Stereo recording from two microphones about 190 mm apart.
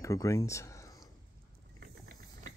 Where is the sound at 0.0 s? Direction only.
15° left (ahead or behind).